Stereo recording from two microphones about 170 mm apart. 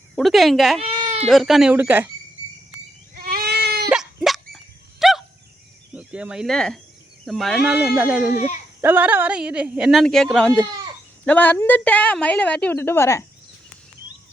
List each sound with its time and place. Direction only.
0.2 s speech: centre (ahead or behind)
0.8 s goat: 30° right (ahead or behind)
1.3 s speech: centre (ahead or behind)
3.2 s goat: 65° right (ahead or behind)
3.9 s a sound: centre (ahead or behind)
5.9 s a woman's voice: 5° right (ahead or behind); by 13.2 s 15° left (ahead or behind)